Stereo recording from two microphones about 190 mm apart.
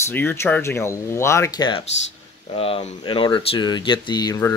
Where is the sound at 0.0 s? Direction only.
10° left (ahead or behind).